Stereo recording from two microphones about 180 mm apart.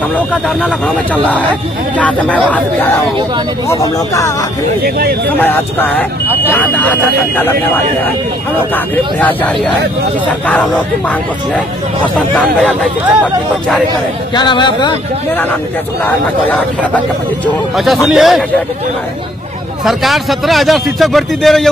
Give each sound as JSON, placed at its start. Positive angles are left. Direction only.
{"t": 0.1, "sound": "speech", "side_deg": 5}
{"t": 4.8, "sound": "speech", "side_deg": -60}
{"t": 5.4, "sound": "speech", "side_deg": 10}
{"t": 14.3, "sound": "speech", "side_deg": 25}
{"t": 16.0, "sound": "speech", "side_deg": 10}
{"t": 19.8, "sound": "speech", "side_deg": 0}